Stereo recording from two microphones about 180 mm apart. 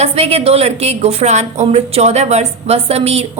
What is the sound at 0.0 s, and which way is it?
A woman's voice, 35° right (ahead or behind).